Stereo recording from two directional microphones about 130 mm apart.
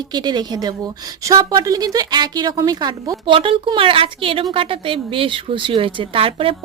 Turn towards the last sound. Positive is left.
turn(degrees=-45)  # may be behind; listen again after turning